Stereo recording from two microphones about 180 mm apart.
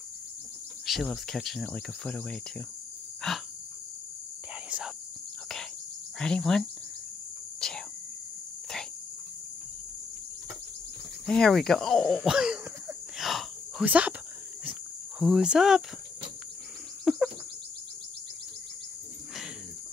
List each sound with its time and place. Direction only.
0.8 s speech: centre (ahead or behind)
3.2 s insect: centre (ahead or behind)
4.6 s insect: 5° right (ahead or behind)
6.1 s speech: 5° left (ahead or behind)
7.6 s cricket: centre (ahead or behind)
11.2 s a sound: 5° left (ahead or behind)
14.6 s cricket: 5° right (ahead or behind)
17.0 s bird: 5° right (ahead or behind)